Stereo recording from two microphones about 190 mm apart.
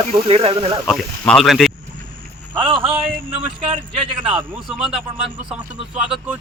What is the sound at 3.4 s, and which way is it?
Speech, 30° right (ahead or behind).